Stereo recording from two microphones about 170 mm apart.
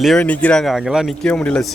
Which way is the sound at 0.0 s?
5° left (ahead or behind).